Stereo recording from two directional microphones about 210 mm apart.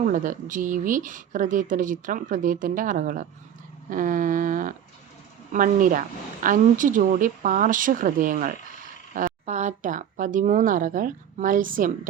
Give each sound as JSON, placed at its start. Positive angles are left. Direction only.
{"t": 0.0, "sound": "speech", "side_deg": -40}